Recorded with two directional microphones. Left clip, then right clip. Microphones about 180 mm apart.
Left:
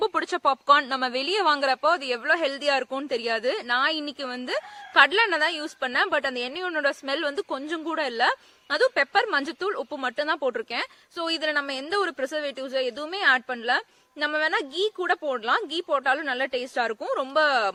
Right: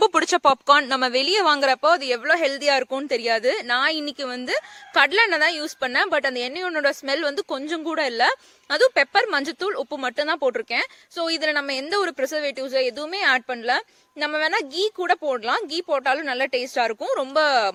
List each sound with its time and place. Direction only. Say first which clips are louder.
0.0 s speech: right 6 dB; 55° right (ahead or behind)